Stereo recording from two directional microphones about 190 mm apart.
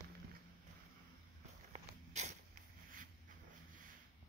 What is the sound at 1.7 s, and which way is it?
Walk, 35° right (ahead or behind).